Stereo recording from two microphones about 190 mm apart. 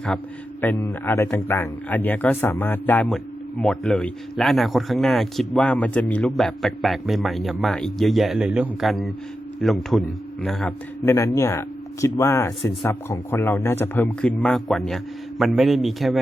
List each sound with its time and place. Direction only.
0.6 s a man's voice: 10° left (ahead or behind)
11.0 s speech: 15° left (ahead or behind)